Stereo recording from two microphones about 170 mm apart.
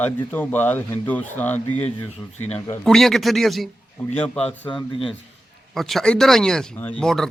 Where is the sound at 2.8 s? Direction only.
Centre (ahead or behind).